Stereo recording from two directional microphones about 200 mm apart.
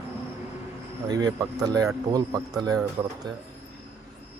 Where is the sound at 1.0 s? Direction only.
20° right (ahead or behind).